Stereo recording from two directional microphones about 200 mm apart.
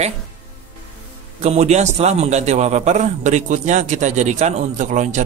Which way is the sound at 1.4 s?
35° right (ahead or behind).